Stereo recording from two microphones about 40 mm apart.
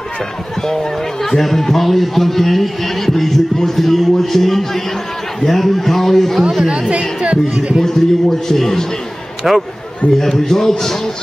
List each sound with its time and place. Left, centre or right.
0.7 s a man's voice: centre
7.2 s speech: right
7.8 s a man's voice: centre
9.5 s speech: centre
10.1 s a man's voice: centre